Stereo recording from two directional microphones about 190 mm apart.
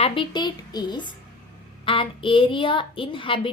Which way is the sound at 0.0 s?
25° left (ahead or behind).